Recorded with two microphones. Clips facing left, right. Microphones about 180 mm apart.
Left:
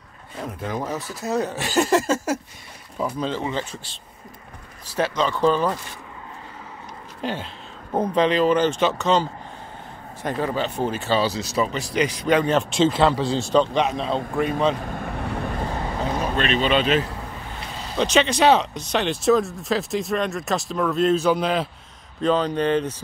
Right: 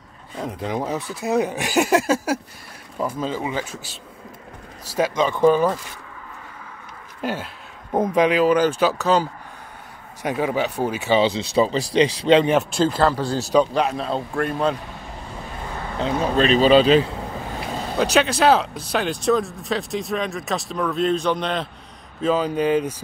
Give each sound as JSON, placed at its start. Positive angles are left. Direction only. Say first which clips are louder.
{"t": 0.5, "sound": "speech", "louder": "right 2 dB", "side_deg": -20}
{"t": 7.2, "sound": "speech", "louder": "right 2 dB", "side_deg": -10}
{"t": 12.9, "sound": "speech", "louder": "even", "side_deg": 0}
{"t": 14.9, "sound": "vehicle", "louder": "left 7 dB", "side_deg": 60}
{"t": 16.2, "sound": "speech", "louder": "right 7 dB", "side_deg": -35}
{"t": 17.9, "sound": "speech", "louder": "even", "side_deg": -5}
{"t": 22.2, "sound": "speech", "louder": "even", "side_deg": -5}